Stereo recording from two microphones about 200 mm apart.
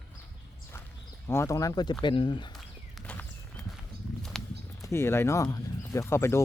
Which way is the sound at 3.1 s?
5° left (ahead or behind).